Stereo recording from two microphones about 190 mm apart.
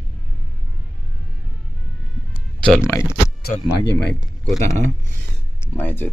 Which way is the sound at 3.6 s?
15° left (ahead or behind).